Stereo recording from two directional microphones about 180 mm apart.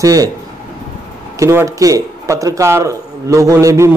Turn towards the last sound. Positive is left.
turn(degrees=-15)  # may be behind; listen again after turning